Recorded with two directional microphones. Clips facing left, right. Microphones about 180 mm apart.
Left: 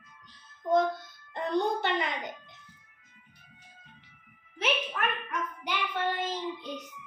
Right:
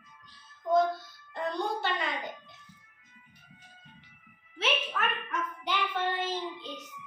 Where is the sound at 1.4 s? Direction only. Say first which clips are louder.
Left 4 dB; 20° left (ahead or behind).